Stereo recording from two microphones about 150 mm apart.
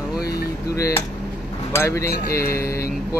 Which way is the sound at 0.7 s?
20° left (ahead or behind).